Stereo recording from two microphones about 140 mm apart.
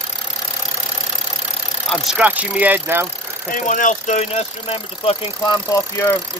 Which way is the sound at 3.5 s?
65° left (ahead or behind).